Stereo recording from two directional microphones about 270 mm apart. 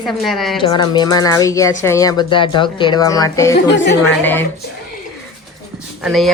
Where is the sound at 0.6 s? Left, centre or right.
Centre.